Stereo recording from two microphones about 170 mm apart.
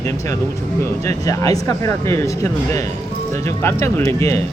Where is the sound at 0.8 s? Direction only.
20° left (ahead or behind).